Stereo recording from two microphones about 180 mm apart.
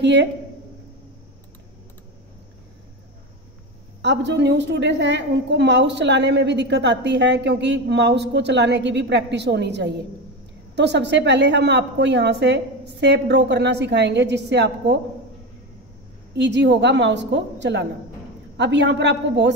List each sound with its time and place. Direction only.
0.0 s a woman's voice: 75° right (ahead or behind)
4.0 s a woman's voice: 75° right (ahead or behind)
16.3 s a woman's voice: 75° right (ahead or behind)